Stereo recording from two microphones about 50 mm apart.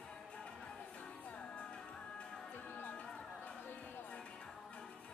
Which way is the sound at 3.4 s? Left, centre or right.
Left.